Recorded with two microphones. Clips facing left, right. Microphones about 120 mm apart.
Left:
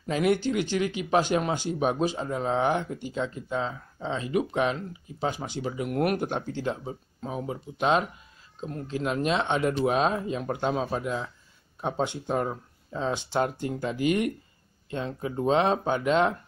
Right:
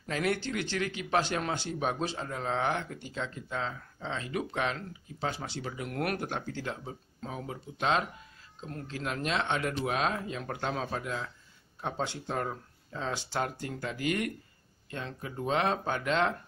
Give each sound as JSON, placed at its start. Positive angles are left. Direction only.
{"t": 0.0, "sound": "speech", "side_deg": 15}